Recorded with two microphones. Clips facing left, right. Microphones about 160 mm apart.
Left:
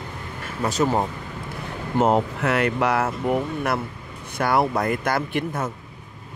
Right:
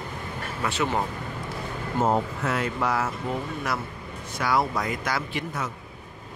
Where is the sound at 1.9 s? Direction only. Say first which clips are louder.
Left 5 dB; 75° left (ahead or behind); by 5.7 s 55° left (ahead or behind).